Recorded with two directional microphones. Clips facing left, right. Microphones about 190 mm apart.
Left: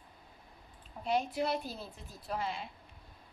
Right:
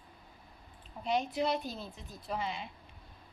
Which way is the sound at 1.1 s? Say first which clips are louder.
Right 1 dB; 5° left (ahead or behind).